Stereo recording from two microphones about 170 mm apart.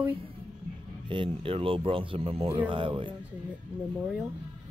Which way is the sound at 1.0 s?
30° right (ahead or behind).